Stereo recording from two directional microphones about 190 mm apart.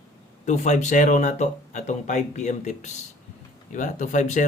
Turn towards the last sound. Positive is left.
turn(degrees=40)  # may be behind; listen again after turning